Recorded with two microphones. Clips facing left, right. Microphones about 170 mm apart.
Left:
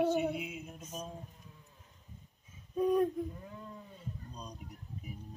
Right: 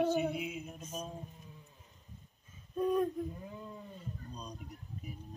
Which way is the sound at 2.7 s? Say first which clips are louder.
Left 2 dB; 5° left (ahead or behind).